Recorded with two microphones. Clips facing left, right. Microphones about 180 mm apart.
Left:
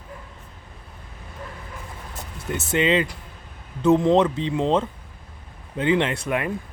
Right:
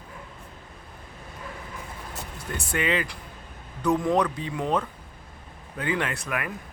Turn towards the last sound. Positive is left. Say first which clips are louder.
# left 6 dB
turn(degrees=25)  # may be behind; listen again after turning